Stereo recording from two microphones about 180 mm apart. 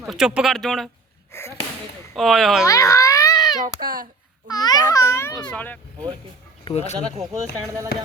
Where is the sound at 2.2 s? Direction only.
Centre (ahead or behind).